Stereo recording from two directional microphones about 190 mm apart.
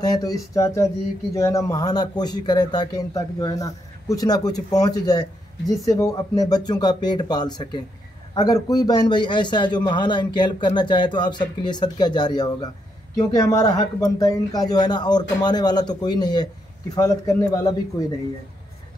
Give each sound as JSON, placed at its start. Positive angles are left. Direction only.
{"t": 0.0, "sound": "a man's voice", "side_deg": 20}